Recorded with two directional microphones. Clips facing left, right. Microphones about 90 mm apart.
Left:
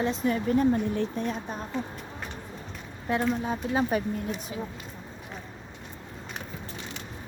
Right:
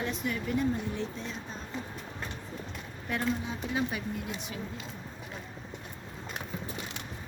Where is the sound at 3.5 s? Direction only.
40° left (ahead or behind).